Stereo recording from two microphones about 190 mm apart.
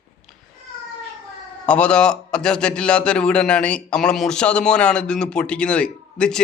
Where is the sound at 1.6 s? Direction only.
5° left (ahead or behind).